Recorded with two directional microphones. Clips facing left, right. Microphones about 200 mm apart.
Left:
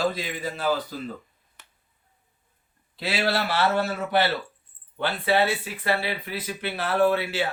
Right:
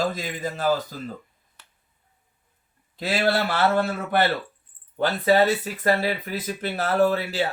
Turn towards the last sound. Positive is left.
turn(degrees=-40)  # may be behind; listen again after turning